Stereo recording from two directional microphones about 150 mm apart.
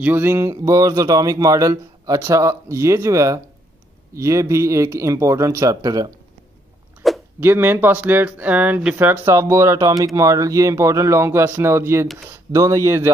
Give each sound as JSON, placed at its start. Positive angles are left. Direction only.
{"t": 0.0, "sound": "speech", "side_deg": -15}
{"t": 7.0, "sound": "a sound", "side_deg": 0}
{"t": 7.3, "sound": "speech", "side_deg": -15}